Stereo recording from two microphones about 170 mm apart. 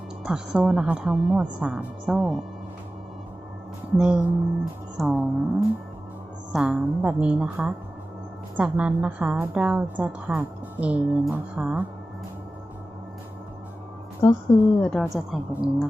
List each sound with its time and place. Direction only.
0.2 s speech: 5° right (ahead or behind)
3.9 s a woman's voice: 5° right (ahead or behind)
14.2 s a woman's voice: 20° left (ahead or behind)
14.8 s speech: 5° left (ahead or behind)